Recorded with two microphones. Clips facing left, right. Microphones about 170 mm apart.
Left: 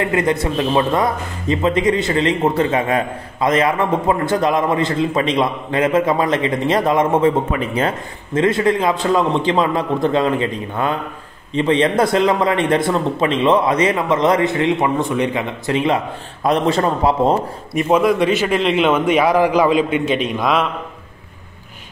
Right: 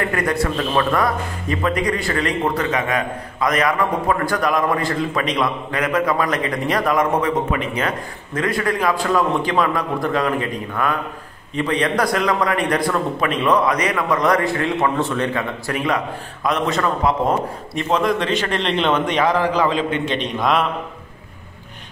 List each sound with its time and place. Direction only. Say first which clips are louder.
0.0 s a man's voice: left 3 dB; 20° left (ahead or behind)
17.7 s a man's voice: left 5 dB; 10° left (ahead or behind)